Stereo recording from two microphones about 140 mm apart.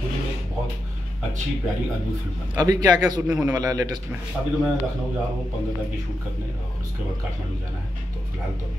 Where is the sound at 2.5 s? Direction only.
25° right (ahead or behind).